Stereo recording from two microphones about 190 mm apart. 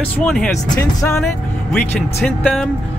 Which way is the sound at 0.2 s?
5° left (ahead or behind).